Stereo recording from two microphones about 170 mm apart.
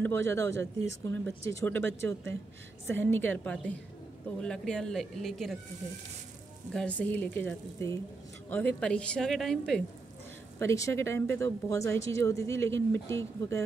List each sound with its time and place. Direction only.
0.0 s speech: 15° left (ahead or behind)
6.7 s speech: 5° left (ahead or behind)
10.6 s speech: 15° left (ahead or behind)